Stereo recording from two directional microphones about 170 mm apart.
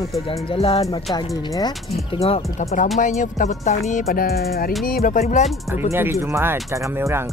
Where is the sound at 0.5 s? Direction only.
35° left (ahead or behind).